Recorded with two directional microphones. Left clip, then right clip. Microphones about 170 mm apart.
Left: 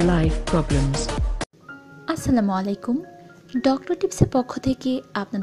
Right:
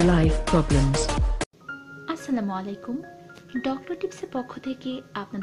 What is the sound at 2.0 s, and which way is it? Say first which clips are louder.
A woman's voice: left 7 dB; 40° left (ahead or behind).